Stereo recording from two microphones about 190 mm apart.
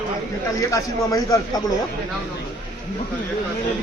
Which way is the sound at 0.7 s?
20° left (ahead or behind).